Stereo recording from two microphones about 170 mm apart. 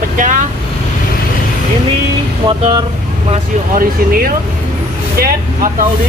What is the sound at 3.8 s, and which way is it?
Speech, 60° right (ahead or behind).